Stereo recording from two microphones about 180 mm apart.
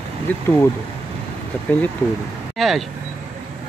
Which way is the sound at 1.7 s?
10° left (ahead or behind).